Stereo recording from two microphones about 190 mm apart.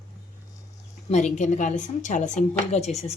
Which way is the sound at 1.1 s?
40° left (ahead or behind).